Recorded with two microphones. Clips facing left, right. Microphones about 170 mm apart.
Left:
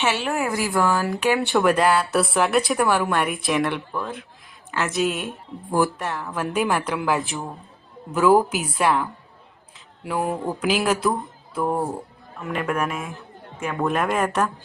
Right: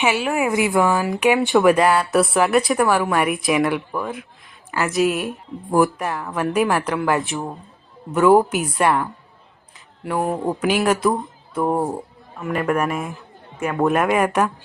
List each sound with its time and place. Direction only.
0.0 s speech: 5° right (ahead or behind)
9.7 s a sound: centre (ahead or behind)
10.3 s speech: 15° right (ahead or behind)
10.6 s speech: centre (ahead or behind)
11.6 s speech: 20° right (ahead or behind)
12.4 s speech: centre (ahead or behind)